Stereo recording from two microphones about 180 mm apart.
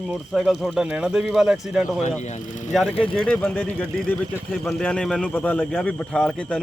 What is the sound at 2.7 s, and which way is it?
Speech, centre (ahead or behind).